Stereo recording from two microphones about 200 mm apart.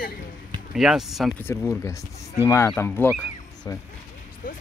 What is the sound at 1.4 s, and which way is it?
A man's voice, 15° left (ahead or behind).